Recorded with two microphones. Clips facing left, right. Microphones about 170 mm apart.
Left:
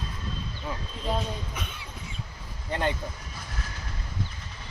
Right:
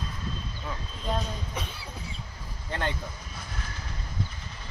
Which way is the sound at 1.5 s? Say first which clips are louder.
Right 2 dB; 35° right (ahead or behind).